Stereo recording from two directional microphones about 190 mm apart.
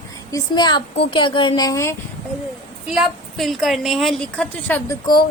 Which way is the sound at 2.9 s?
Centre (ahead or behind).